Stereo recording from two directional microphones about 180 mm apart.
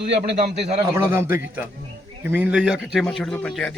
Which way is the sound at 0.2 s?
35° right (ahead or behind).